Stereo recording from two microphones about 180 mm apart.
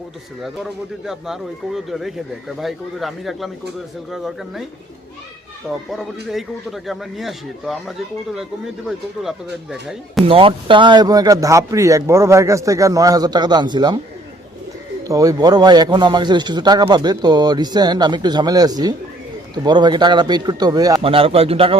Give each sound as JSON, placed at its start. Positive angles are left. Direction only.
{"t": 0.4, "sound": "speech", "side_deg": 0}
{"t": 6.2, "sound": "speech", "side_deg": 0}
{"t": 10.2, "sound": "speech", "side_deg": -30}
{"t": 15.0, "sound": "speech", "side_deg": -20}
{"t": 21.0, "sound": "speech", "side_deg": -30}